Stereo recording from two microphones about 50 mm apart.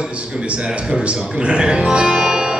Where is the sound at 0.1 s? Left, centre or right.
Right.